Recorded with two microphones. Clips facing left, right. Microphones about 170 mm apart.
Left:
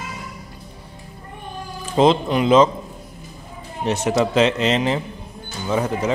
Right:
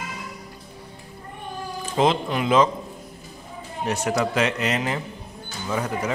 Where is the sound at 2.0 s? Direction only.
25° left (ahead or behind).